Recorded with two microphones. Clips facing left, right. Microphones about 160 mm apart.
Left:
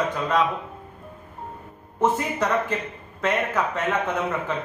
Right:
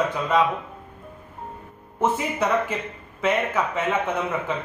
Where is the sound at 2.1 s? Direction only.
10° right (ahead or behind).